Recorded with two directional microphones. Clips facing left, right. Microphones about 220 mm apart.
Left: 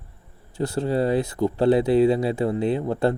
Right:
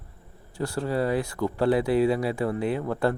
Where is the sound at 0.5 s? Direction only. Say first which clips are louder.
Left 4 dB; 20° left (ahead or behind).